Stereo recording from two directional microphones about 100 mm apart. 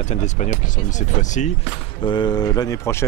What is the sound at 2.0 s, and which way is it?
Speech, 50° left (ahead or behind).